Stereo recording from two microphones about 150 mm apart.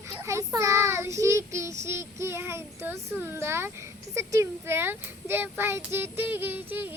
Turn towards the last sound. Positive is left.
turn(degrees=-15)  # may be behind; listen again after turning